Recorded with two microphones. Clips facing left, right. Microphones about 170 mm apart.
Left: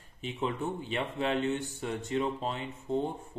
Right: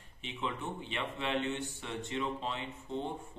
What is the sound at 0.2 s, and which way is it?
A man's voice, 40° left (ahead or behind).